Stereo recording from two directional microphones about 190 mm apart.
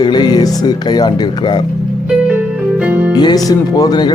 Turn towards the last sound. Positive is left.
turn(degrees=20)  # may be behind; listen again after turning